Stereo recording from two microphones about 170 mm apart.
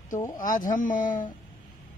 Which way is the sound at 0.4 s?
50° left (ahead or behind).